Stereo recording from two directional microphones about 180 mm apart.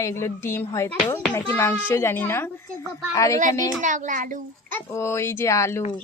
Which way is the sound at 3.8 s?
45° right (ahead or behind).